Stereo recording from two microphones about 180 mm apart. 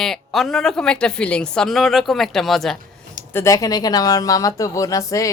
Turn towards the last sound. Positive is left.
turn(degrees=20)  # may be behind; listen again after turning